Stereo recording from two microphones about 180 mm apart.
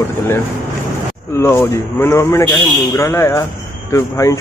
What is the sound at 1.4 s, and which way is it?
Speech, 15° left (ahead or behind).